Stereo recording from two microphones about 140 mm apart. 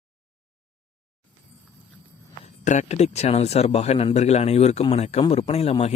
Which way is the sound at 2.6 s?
55° left (ahead or behind).